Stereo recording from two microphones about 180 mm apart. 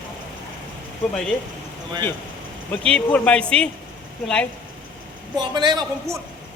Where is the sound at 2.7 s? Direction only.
5° left (ahead or behind).